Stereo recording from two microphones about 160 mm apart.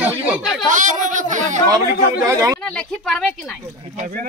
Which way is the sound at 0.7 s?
50° right (ahead or behind).